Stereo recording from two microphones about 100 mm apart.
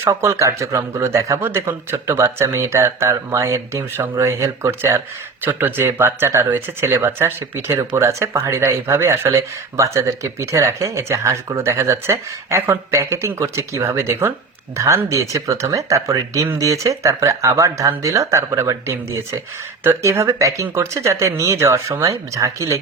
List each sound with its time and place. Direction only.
0.0 s speech: 25° right (ahead or behind)